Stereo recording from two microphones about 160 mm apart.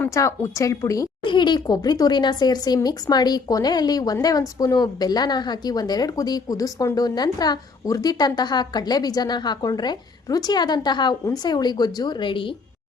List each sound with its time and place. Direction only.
0.0 s speech: 20° left (ahead or behind)